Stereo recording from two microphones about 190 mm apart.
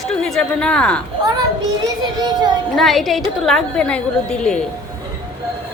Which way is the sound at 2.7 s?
Centre (ahead or behind).